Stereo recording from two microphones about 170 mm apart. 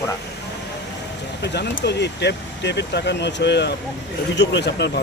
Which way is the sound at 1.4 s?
80° left.